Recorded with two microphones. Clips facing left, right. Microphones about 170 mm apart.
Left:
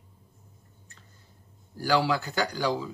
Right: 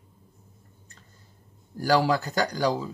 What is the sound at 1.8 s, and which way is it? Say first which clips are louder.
Speech: right 3 dB; 40° right (ahead or behind).